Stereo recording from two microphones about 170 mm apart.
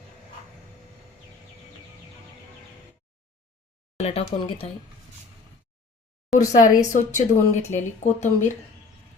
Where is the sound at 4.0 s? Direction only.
35° left (ahead or behind).